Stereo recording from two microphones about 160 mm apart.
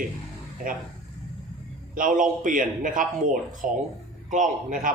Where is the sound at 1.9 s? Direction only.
55° right (ahead or behind).